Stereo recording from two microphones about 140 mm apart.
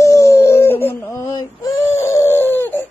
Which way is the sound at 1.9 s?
20° left (ahead or behind).